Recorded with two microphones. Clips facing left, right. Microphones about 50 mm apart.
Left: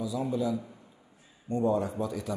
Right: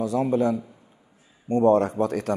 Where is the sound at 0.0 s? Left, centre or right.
Right.